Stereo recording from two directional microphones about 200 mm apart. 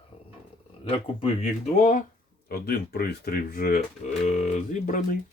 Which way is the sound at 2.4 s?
50° left (ahead or behind).